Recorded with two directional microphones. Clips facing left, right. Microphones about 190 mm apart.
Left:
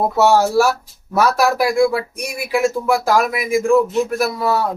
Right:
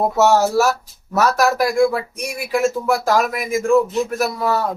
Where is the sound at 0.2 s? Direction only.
10° left (ahead or behind).